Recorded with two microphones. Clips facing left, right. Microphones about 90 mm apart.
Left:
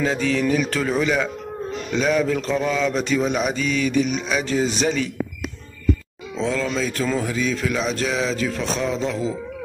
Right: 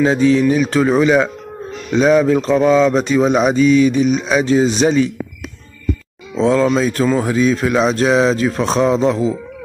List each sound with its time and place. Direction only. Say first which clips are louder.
0.0 s speech: right 8 dB; 25° right (ahead or behind)
1.9 s speech: right 8 dB; 30° right (ahead or behind)
6.3 s speech: right 10 dB; 35° right (ahead or behind)